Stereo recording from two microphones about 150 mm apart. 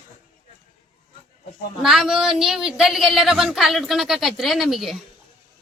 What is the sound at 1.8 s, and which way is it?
Speech, centre (ahead or behind).